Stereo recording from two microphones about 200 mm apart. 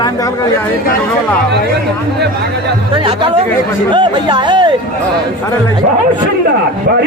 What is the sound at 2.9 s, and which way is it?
Speech, 25° right (ahead or behind).